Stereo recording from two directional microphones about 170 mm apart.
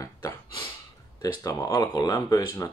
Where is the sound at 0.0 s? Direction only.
20° left (ahead or behind).